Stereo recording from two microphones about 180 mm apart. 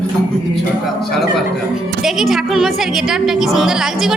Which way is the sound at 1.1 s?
Centre (ahead or behind).